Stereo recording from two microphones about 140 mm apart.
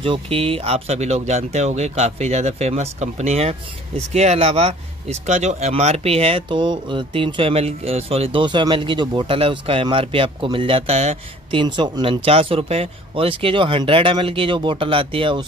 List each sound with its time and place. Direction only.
0.0 s speech: 40° right (ahead or behind)
11.6 s speech: 30° right (ahead or behind)